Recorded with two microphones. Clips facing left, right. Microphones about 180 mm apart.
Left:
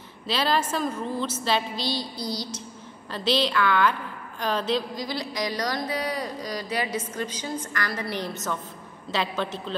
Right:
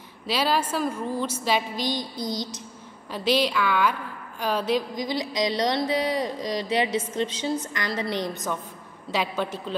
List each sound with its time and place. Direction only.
0.3 s a woman's voice: 10° right (ahead or behind)
4.4 s a sound: 10° right (ahead or behind)
9.1 s a woman's voice: 10° right (ahead or behind)